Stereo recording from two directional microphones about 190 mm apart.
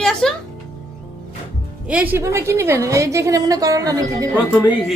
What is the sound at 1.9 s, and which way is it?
A woman's voice, 10° right (ahead or behind).